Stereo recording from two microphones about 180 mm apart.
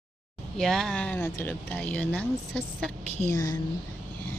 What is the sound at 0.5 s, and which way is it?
Speech, centre (ahead or behind).